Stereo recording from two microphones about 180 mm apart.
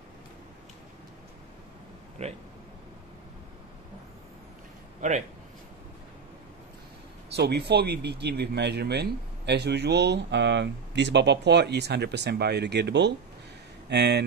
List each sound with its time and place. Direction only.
2.2 s speech: 35° right (ahead or behind)
7.3 s speech: 65° right (ahead or behind)